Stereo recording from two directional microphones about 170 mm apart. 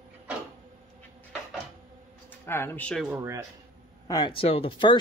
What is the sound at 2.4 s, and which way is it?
Speech, 15° left (ahead or behind).